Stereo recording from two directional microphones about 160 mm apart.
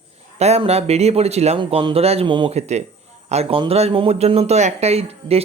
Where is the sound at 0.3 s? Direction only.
40° right (ahead or behind).